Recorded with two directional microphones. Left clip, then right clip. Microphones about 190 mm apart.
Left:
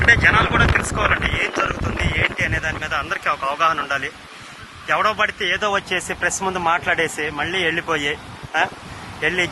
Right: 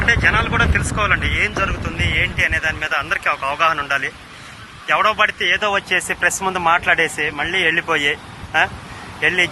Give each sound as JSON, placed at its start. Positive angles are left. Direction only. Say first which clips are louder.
{"t": 0.0, "sound": "speech", "louder": "left 2 dB", "side_deg": 10}
{"t": 6.0, "sound": "speech", "louder": "right 4 dB", "side_deg": 10}